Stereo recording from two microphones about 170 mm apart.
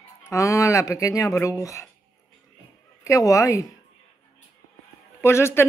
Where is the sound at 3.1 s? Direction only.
20° left (ahead or behind).